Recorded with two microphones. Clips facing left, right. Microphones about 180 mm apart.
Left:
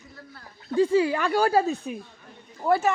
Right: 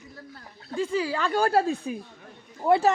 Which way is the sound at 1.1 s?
10° left (ahead or behind).